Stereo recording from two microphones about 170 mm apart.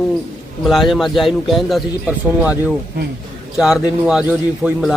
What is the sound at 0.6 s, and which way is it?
A man's voice, centre (ahead or behind).